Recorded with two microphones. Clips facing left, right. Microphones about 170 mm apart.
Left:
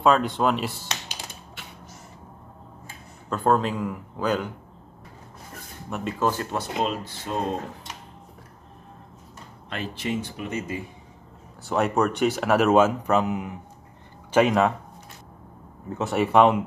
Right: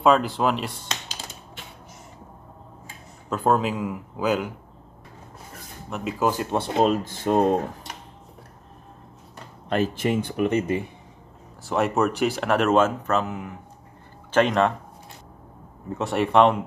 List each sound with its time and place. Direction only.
0.0 s speech: centre (ahead or behind)
3.3 s speech: 5° right (ahead or behind)
5.9 s speech: centre (ahead or behind)
6.5 s speech: 30° right (ahead or behind)
6.8 s speech: 45° right (ahead or behind)
9.7 s speech: 45° right (ahead or behind); by 10.8 s 65° right (ahead or behind)
11.6 s speech: centre (ahead or behind); by 13.6 s 15° left (ahead or behind)
14.3 s speech: 5° left (ahead or behind)
15.9 s speech: centre (ahead or behind)